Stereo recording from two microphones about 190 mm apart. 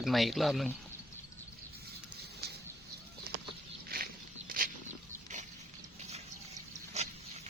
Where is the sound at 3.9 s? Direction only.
50° right (ahead or behind).